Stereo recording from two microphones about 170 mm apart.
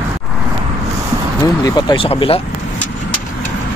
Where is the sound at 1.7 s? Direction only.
25° left (ahead or behind).